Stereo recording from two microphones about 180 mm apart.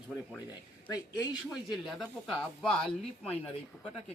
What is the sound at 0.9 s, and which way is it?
Speech, 20° left (ahead or behind).